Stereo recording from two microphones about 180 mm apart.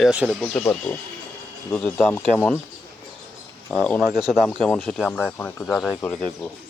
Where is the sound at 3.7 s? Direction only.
5° left (ahead or behind).